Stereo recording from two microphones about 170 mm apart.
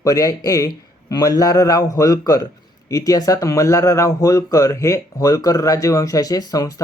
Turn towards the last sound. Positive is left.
turn(degrees=20)  # may be behind; listen again after turning